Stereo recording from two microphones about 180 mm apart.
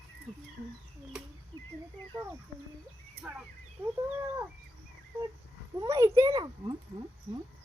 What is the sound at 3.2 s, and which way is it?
Speech, 10° right (ahead or behind).